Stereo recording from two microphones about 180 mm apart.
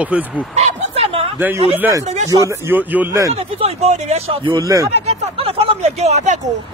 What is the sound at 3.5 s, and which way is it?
Speech, 35° right (ahead or behind).